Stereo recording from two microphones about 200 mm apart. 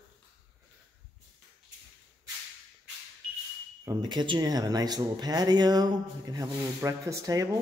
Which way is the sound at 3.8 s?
20° right (ahead or behind).